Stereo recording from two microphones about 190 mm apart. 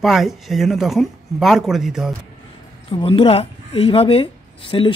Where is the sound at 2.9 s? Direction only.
25° left (ahead or behind).